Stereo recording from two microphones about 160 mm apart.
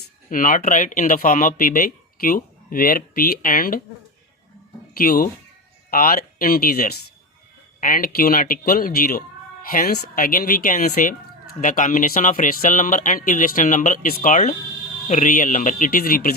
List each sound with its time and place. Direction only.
0.3 s speech: 60° left (ahead or behind)
4.9 s speech: 65° left (ahead or behind)